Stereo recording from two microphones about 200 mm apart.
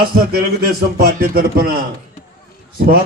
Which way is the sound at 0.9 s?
50° right (ahead or behind).